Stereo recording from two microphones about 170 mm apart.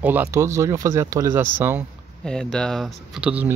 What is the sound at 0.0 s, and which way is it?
Speech, 10° right (ahead or behind).